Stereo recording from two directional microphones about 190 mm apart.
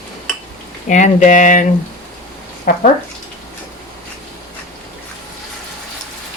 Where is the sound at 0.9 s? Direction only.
40° left (ahead or behind).